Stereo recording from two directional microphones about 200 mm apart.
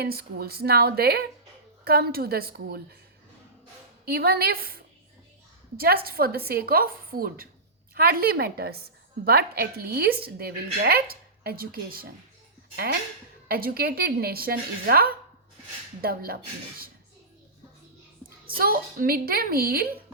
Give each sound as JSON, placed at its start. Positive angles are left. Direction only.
{"t": 0.0, "sound": "a woman's voice", "side_deg": -50}
{"t": 4.0, "sound": "a woman's voice", "side_deg": -50}
{"t": 18.4, "sound": "a woman's voice", "side_deg": -50}